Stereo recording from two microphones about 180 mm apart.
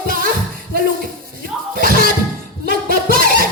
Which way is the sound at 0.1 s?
50° right (ahead or behind).